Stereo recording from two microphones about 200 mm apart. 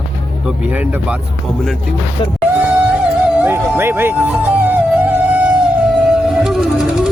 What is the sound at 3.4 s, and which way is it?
Speech, 10° right (ahead or behind).